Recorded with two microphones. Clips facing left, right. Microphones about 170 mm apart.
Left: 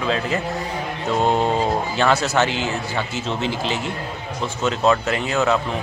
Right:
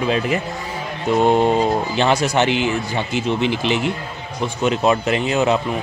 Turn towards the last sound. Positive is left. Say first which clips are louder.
# right 2 dB
turn(degrees=-20)  # may be behind; listen again after turning